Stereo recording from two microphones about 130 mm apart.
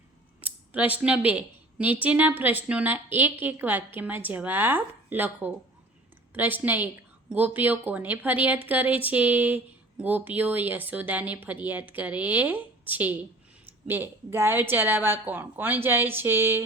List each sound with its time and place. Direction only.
0.4 s speech: 10° right (ahead or behind)